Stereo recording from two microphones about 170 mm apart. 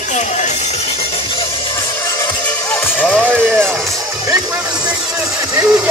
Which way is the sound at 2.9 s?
5° right (ahead or behind).